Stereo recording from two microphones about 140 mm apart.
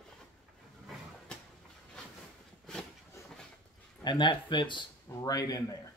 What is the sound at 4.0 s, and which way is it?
Speech, 30° left (ahead or behind).